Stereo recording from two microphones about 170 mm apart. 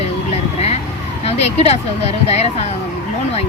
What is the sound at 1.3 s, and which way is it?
Speech, 40° left (ahead or behind).